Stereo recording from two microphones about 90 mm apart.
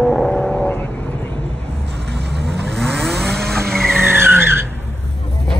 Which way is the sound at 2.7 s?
5° left (ahead or behind).